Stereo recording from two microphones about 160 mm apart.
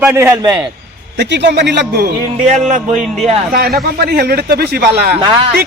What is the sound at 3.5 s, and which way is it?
Speech, 75° right (ahead or behind).